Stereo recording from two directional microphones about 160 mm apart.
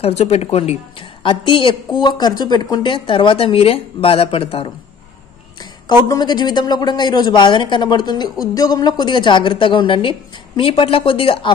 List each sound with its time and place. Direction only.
0.0 s a woman's voice: 40° left (ahead or behind)
5.6 s a woman's voice: 25° left (ahead or behind)